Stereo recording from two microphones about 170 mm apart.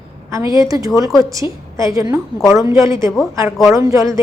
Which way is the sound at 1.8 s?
20° right (ahead or behind).